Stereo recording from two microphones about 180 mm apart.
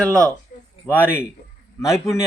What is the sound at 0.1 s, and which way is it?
Speech, 15° right (ahead or behind).